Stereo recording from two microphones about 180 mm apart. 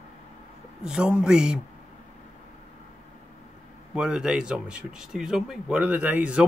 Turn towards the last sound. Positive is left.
turn(degrees=-5)  # may be behind; listen again after turning